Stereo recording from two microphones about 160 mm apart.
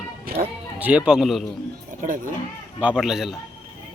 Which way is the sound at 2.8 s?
5° right (ahead or behind).